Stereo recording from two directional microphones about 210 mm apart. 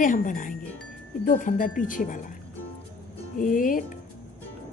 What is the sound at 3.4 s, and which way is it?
Speech, 40° left (ahead or behind).